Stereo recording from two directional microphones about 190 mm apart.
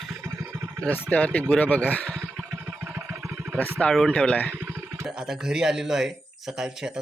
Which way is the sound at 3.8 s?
5° left (ahead or behind).